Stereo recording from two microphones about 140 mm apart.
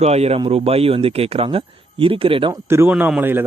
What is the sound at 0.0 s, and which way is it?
Speech, 50° right (ahead or behind).